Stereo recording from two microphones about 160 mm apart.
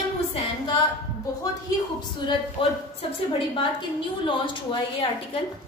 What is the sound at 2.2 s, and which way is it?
Speech, 30° left (ahead or behind).